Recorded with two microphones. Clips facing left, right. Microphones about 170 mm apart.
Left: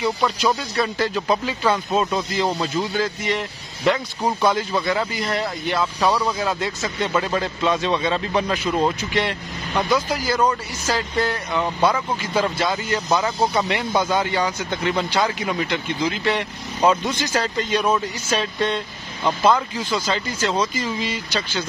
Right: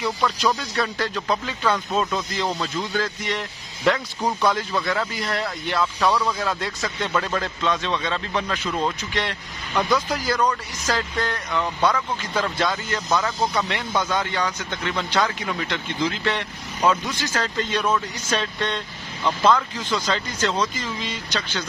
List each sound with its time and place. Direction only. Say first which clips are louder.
0.7 s speech: left 3 dB; 5° left (ahead or behind)
13.4 s speech: left 3 dB; 30° left (ahead or behind)
13.7 s speech: left 4 dB; 10° left (ahead or behind)
16.8 s speech: left 3 dB; 25° left (ahead or behind); by 21.6 s 10° left (ahead or behind)